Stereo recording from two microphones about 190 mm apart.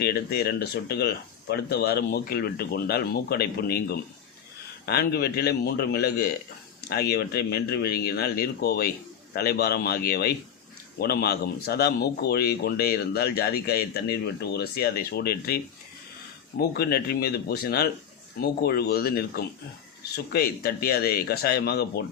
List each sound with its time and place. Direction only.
0.0 s speech: 55° left (ahead or behind)